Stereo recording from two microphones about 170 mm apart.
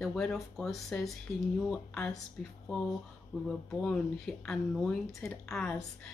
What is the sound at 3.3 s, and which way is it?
Speech, centre (ahead or behind).